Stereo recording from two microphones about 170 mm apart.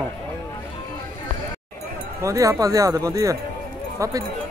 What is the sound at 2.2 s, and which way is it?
Speech, 20° right (ahead or behind).